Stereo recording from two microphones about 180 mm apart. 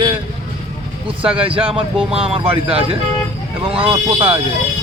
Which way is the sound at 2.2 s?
35° right (ahead or behind).